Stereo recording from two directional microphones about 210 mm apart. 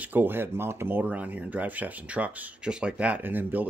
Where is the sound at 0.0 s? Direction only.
10° right (ahead or behind).